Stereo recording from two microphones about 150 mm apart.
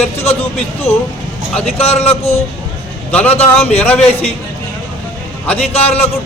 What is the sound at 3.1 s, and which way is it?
Speech, 10° left (ahead or behind).